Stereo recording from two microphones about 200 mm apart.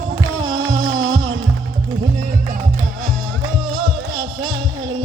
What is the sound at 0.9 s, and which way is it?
Music, 80° right.